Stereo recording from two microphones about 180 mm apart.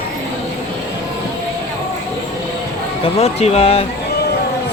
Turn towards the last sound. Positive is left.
turn(degrees=35)  # may be behind; listen again after turning